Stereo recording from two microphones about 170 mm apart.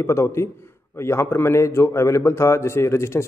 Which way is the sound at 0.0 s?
15° left (ahead or behind).